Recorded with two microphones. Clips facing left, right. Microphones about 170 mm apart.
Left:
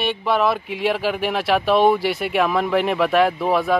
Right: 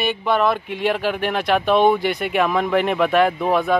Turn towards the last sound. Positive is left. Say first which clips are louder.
# even
turn(degrees=0)  # may be behind; listen again after turning